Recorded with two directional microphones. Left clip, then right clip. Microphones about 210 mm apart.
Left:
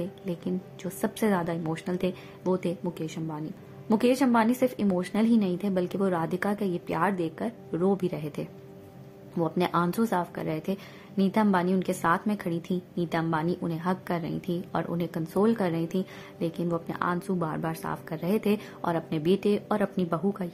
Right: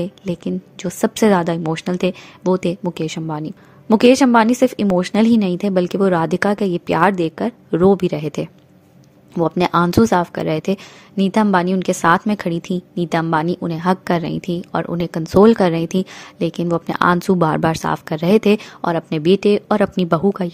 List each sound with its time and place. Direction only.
0.0 s a woman's voice: 40° right (ahead or behind)